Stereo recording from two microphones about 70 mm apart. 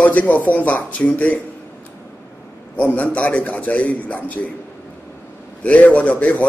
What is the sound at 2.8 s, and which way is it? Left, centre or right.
A man's voice, left.